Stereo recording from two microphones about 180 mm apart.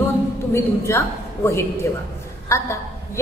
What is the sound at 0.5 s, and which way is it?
A woman's voice, 15° left (ahead or behind).